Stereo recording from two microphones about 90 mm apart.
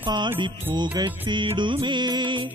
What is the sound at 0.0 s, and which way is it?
Music, 55° right (ahead or behind).